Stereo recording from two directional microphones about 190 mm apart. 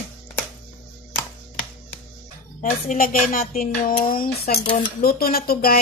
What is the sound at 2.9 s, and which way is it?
Speech, 45° left (ahead or behind).